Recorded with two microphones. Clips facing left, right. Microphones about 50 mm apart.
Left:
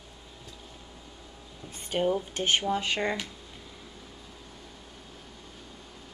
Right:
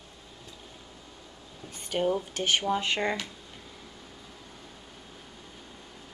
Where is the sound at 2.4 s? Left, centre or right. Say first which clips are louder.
Even; left.